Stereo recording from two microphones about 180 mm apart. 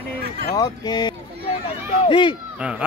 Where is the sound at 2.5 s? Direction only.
5° right (ahead or behind).